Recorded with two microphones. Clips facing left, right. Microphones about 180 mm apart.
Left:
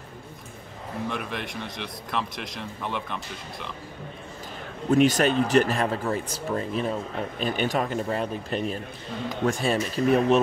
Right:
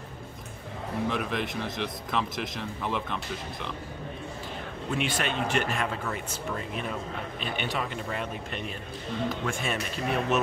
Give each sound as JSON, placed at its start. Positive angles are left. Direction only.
{"t": 1.0, "sound": "speech", "side_deg": 0}
{"t": 4.9, "sound": "speech", "side_deg": 40}